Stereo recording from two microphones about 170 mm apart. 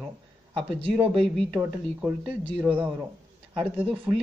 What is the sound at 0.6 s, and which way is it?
Speech, 30° right (ahead or behind).